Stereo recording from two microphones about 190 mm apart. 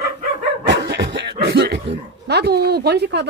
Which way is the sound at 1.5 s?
60° right (ahead or behind).